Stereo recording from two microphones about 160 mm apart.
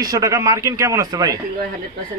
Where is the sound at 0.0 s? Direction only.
20° right (ahead or behind).